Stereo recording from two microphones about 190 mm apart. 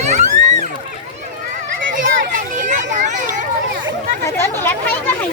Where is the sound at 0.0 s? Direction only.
40° right (ahead or behind).